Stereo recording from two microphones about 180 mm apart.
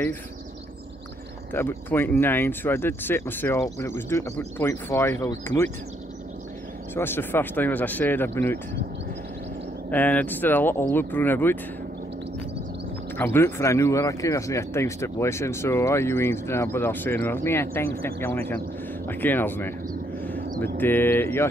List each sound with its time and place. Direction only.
1.5 s speech: 10° left (ahead or behind)
7.0 s speech: 10° left (ahead or behind)
9.8 s speech: 10° left (ahead or behind)
13.2 s speech: 15° left (ahead or behind)
20.3 s a sound: 50° right (ahead or behind)
20.7 s speech: 10° left (ahead or behind)